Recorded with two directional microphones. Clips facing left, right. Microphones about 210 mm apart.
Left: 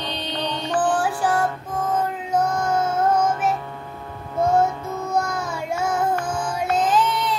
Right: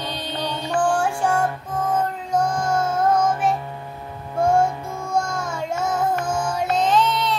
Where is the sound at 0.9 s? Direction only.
5° left (ahead or behind).